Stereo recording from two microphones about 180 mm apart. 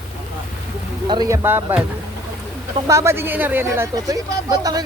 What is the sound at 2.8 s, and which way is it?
Speech, 15° right (ahead or behind).